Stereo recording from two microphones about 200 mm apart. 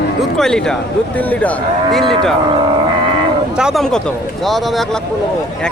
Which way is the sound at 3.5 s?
5° right (ahead or behind).